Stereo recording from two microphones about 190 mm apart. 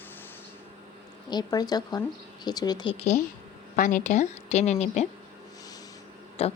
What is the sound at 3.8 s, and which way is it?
A woman's voice, 40° left (ahead or behind).